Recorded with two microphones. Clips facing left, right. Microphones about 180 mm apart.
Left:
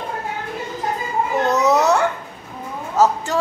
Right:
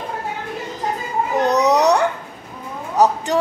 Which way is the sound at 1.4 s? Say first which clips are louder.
Right 2 dB; 15° right (ahead or behind).